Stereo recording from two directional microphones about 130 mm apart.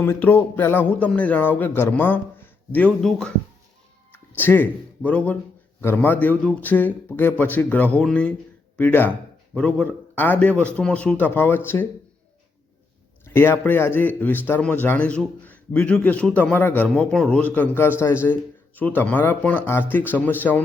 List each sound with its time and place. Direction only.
0.0 s a man's voice: 15° left (ahead or behind)
4.1 s a man's voice: 15° left (ahead or behind)
13.2 s a man's voice: 20° left (ahead or behind)